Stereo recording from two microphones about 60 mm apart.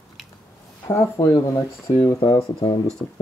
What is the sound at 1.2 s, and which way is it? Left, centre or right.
Speech, left.